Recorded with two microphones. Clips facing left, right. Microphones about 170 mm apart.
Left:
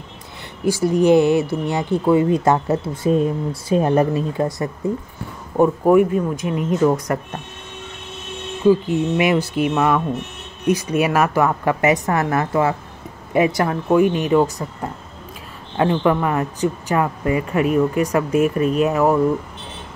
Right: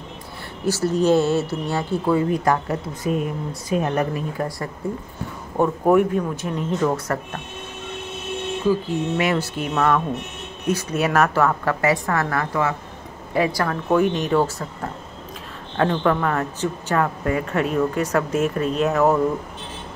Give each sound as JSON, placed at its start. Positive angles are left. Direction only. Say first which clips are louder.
{"t": 0.7, "sound": "speech", "louder": "left 3 dB", "side_deg": 15}
{"t": 5.6, "sound": "speech", "louder": "left 3 dB", "side_deg": 5}
{"t": 8.6, "sound": "speech", "louder": "left 6 dB", "side_deg": 15}
{"t": 13.8, "sound": "speech", "louder": "left 3 dB", "side_deg": 5}